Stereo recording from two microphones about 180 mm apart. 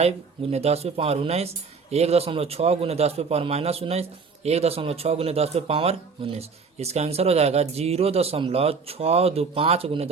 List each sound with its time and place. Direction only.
0.5 s speech: 35° right (ahead or behind)